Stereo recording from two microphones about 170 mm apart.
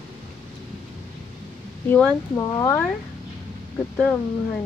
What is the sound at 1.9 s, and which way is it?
Speech, 5° left (ahead or behind).